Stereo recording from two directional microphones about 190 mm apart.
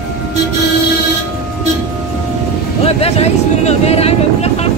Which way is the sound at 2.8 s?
30° left (ahead or behind).